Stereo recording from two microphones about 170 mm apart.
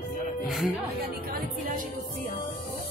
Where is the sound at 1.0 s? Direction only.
55° right (ahead or behind).